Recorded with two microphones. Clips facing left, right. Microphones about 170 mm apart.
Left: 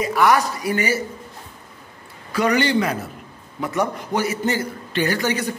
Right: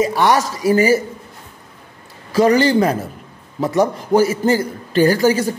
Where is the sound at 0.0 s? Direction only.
30° right (ahead or behind).